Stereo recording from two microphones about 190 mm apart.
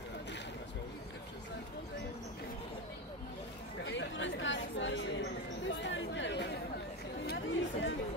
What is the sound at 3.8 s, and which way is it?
Chatter, 75° left (ahead or behind).